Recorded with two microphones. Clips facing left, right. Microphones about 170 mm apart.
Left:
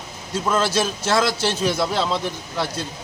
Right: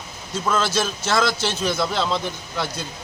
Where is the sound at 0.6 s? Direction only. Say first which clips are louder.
Left 2 dB; 35° left (ahead or behind).